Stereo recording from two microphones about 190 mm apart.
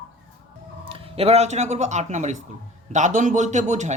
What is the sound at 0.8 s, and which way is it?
Speech, 30° right (ahead or behind).